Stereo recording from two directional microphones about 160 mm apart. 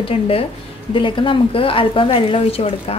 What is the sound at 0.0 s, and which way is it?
A woman's voice, 35° left (ahead or behind).